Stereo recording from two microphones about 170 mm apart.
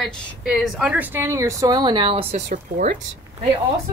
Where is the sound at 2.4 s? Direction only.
50° right (ahead or behind).